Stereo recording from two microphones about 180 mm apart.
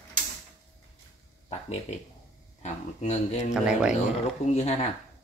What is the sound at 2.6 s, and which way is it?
Speech, 40° left (ahead or behind).